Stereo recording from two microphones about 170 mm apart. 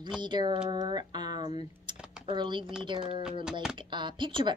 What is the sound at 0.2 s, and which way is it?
Speech, 25° right (ahead or behind).